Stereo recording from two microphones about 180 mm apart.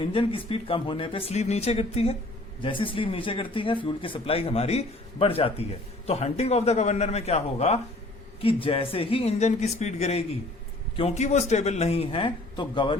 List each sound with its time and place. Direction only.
0.0 s speech: 30° left (ahead or behind)